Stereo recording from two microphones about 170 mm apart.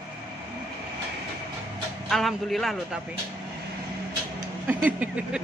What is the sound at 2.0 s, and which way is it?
Speech, centre (ahead or behind).